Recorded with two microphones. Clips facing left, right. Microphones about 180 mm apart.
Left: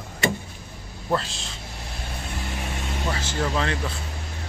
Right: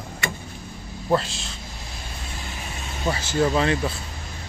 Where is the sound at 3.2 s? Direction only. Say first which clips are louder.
Right 7 dB; 10° right (ahead or behind).